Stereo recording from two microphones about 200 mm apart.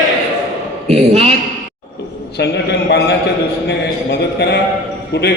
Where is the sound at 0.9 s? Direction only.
35° right (ahead or behind).